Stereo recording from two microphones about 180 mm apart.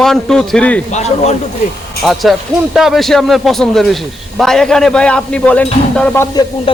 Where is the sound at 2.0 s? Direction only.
Centre (ahead or behind).